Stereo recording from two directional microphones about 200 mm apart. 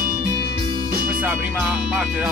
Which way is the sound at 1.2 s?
10° right (ahead or behind).